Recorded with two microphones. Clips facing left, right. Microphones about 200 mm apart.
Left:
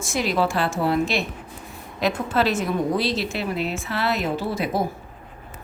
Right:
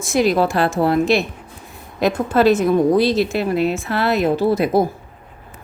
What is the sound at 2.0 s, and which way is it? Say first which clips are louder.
A woman's voice: right 6 dB; 45° right (ahead or behind).